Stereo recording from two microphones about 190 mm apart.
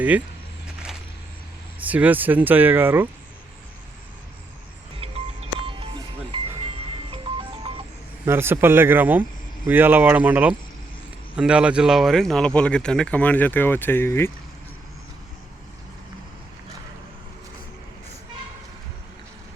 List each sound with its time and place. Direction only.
1.8 s speech: 10° right (ahead or behind)
4.9 s music: 30° right (ahead or behind)
8.2 s speech: 10° right (ahead or behind); by 14.3 s 10° left (ahead or behind)